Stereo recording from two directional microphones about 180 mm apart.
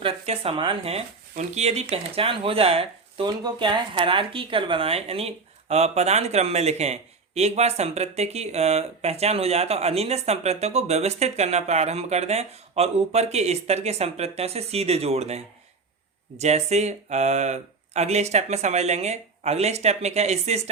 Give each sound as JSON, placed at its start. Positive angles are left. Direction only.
{"t": 0.0, "sound": "speech", "side_deg": -30}